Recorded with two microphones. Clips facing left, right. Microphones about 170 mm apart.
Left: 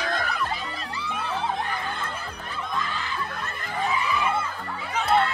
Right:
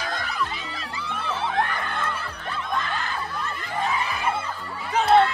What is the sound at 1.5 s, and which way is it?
Snicker, 65° right (ahead or behind).